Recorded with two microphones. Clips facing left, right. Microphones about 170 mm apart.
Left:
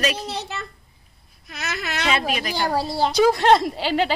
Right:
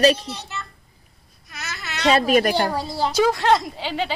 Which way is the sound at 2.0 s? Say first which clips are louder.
Right 8 dB; 40° right (ahead or behind).